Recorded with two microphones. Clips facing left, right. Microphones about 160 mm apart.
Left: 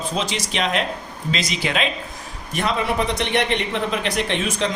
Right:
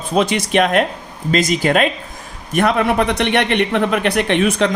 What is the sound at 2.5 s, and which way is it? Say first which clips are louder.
A man's voice: right 7 dB; 60° right (ahead or behind).